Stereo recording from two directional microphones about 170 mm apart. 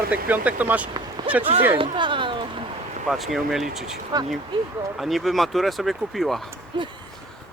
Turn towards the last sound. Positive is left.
turn(degrees=0)  # may be behind; listen again after turning